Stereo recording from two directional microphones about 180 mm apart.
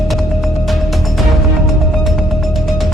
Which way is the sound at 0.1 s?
Centre (ahead or behind).